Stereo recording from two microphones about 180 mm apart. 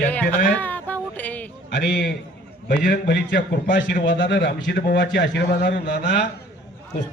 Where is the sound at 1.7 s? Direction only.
90° left.